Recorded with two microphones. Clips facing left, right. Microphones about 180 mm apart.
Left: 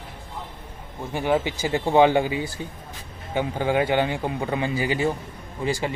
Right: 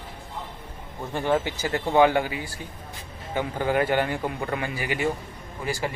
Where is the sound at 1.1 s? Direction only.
15° left (ahead or behind).